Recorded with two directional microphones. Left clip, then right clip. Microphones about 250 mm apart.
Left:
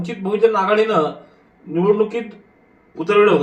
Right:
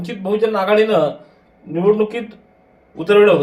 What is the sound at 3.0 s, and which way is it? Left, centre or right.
Speech, right.